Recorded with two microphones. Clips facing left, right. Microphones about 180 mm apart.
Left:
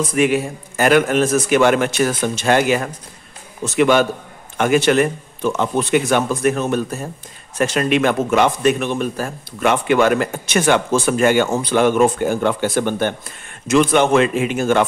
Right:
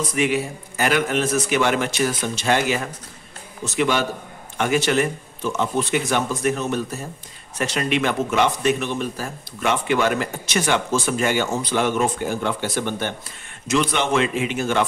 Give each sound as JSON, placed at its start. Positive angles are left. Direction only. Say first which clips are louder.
{"t": 0.1, "sound": "speech", "louder": "left 4 dB", "side_deg": 50}